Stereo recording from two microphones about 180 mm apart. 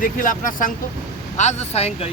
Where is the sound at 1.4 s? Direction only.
40° left (ahead or behind).